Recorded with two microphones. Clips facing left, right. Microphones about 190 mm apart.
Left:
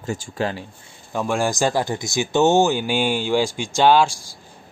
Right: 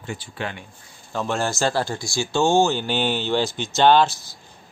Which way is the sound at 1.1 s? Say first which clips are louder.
Left 3 dB; 10° left (ahead or behind).